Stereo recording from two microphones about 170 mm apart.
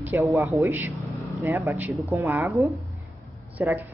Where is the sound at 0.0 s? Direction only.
15° right (ahead or behind).